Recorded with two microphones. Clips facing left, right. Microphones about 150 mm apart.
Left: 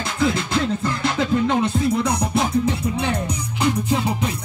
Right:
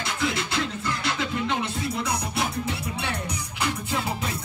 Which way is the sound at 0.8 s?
35° left (ahead or behind).